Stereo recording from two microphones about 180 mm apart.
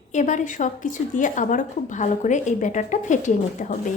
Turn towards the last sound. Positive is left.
turn(degrees=45)  # may be behind; listen again after turning